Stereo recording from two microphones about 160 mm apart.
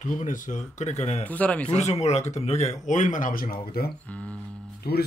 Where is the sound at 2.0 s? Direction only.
45° left (ahead or behind); by 3.9 s 70° left (ahead or behind).